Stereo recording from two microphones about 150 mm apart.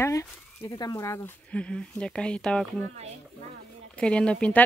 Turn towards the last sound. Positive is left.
turn(degrees=5)  # may be behind; listen again after turning